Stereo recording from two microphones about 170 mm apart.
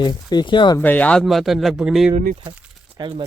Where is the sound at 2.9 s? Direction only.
30° right (ahead or behind).